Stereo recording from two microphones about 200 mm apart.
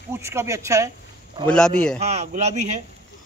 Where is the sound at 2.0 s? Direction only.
35° right (ahead or behind).